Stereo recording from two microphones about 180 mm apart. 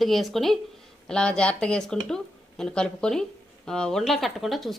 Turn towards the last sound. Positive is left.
turn(degrees=0)  # may be behind; listen again after turning